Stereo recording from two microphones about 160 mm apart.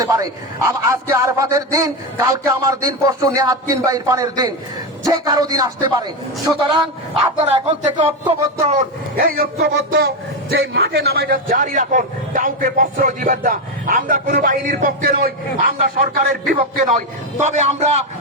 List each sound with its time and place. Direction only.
0.0 s a man's voice: 20° right (ahead or behind)
7.5 s speech: 35° right (ahead or behind)
8.3 s speech: 45° right (ahead or behind)
9.1 s a man's voice: 70° right (ahead or behind)
17.4 s speech: 45° right (ahead or behind)